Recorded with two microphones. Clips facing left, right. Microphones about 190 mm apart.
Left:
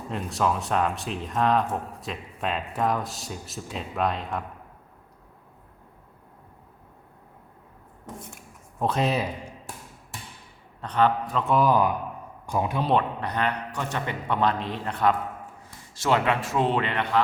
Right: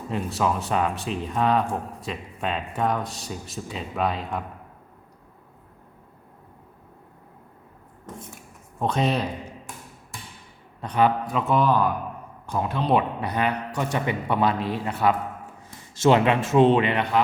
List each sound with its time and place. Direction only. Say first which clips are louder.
0.1 s speech: right 1 dB; centre (ahead or behind)
8.8 s speech: right 1 dB; centre (ahead or behind)
10.8 s a man's voice: right 1 dB; 10° right (ahead or behind)
11.7 s speech: even; 15° left (ahead or behind)
12.9 s a man's voice: right 4 dB; 10° right (ahead or behind)
16.0 s a man's voice: right 5 dB; 20° right (ahead or behind)